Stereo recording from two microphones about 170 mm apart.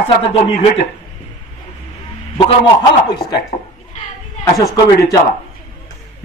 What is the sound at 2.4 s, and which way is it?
Speech, 25° left (ahead or behind).